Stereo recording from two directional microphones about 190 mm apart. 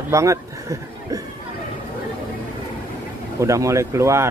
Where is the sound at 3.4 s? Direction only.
15° right (ahead or behind).